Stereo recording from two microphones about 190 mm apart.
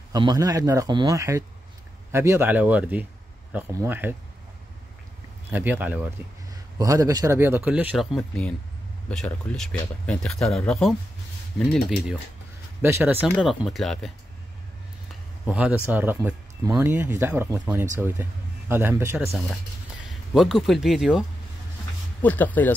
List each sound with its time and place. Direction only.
0.1 s speech: 20° right (ahead or behind)
5.5 s speech: 10° right (ahead or behind)
12.8 s speech: 10° right (ahead or behind)
15.4 s speech: 5° right (ahead or behind)
20.1 s speech: centre (ahead or behind)
22.2 s speech: 10° left (ahead or behind)